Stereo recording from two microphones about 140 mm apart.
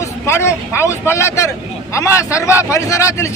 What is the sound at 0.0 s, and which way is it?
Speech, 20° left (ahead or behind).